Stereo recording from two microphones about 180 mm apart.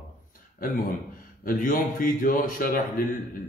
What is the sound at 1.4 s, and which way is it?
A man's voice, 50° left (ahead or behind).